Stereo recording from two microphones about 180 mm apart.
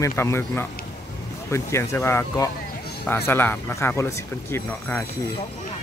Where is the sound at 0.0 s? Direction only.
15° left (ahead or behind).